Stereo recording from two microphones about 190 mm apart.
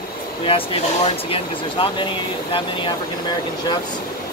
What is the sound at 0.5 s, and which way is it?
Speech, 30° left (ahead or behind).